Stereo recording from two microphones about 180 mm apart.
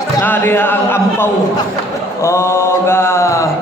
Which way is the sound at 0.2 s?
10° left (ahead or behind).